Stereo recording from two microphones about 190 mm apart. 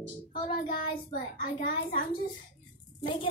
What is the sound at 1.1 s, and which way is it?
Child singing, 50° left (ahead or behind).